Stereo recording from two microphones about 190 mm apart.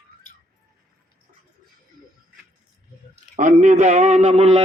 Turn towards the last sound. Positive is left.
turn(degrees=-35)  # may be behind; listen again after turning